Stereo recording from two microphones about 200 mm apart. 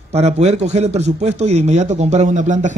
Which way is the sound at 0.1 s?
35° right (ahead or behind).